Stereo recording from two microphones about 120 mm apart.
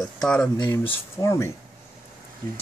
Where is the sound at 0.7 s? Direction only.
25° left (ahead or behind).